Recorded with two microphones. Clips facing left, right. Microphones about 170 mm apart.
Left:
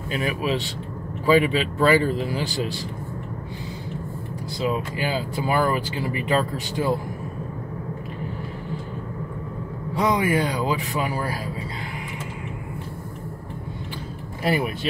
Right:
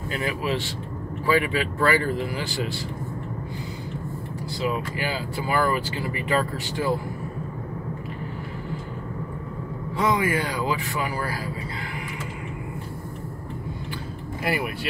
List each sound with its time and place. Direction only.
0.1 s speech: 20° left (ahead or behind)
4.6 s speech: 20° left (ahead or behind)
9.9 s speech: 20° left (ahead or behind)
14.4 s speech: 25° left (ahead or behind)